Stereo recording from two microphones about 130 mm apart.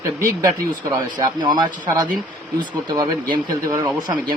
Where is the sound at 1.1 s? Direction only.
30° right (ahead or behind).